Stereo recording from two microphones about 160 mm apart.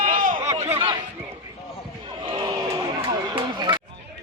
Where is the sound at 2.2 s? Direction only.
30° right (ahead or behind).